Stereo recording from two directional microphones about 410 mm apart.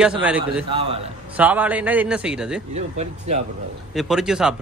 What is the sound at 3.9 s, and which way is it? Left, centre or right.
Speech, centre.